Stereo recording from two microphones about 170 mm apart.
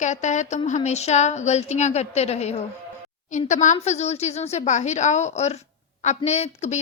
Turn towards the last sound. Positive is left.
turn(degrees=40)  # may be behind; listen again after turning